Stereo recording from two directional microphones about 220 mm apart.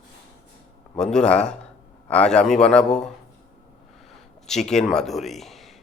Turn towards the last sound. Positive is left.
turn(degrees=0)  # may be behind; listen again after turning